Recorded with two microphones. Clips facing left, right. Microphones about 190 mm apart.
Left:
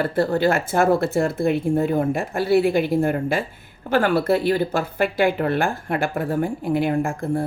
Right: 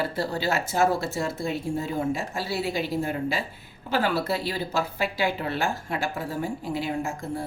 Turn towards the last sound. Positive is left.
turn(degrees=55)  # may be behind; listen again after turning